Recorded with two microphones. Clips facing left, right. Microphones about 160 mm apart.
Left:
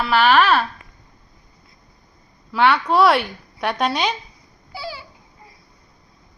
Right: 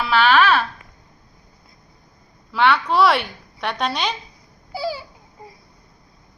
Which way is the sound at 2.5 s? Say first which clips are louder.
Left 1 dB; 5° left (ahead or behind).